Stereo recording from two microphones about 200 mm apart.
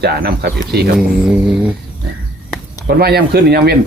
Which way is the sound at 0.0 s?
50° right (ahead or behind).